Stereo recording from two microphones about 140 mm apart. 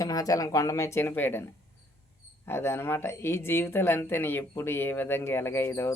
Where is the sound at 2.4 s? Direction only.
15° left (ahead or behind).